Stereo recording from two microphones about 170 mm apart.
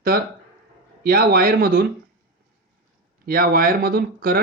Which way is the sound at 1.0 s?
60° right (ahead or behind).